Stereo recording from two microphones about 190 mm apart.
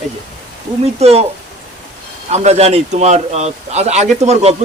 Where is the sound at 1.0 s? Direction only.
35° right (ahead or behind).